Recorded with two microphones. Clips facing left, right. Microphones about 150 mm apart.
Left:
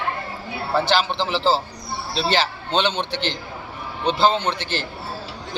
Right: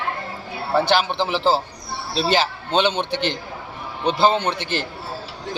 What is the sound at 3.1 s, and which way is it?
Speech, 55° right (ahead or behind).